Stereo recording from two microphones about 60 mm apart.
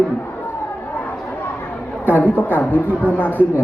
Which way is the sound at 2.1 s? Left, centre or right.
Left.